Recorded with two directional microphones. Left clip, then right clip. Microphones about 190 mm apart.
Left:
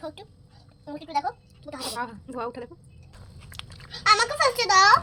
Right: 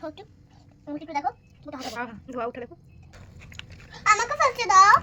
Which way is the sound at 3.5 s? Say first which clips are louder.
Left 4 dB; 10° left (ahead or behind).